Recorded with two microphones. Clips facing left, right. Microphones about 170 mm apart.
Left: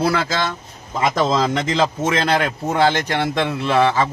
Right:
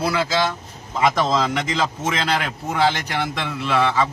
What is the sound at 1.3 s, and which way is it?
Speech, 35° left (ahead or behind).